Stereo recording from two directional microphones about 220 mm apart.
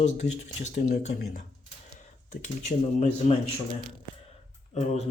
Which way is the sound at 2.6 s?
30° left (ahead or behind).